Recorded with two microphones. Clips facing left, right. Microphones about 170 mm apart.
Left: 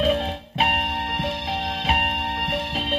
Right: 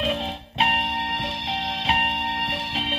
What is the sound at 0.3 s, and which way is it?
Music, 5° left (ahead or behind).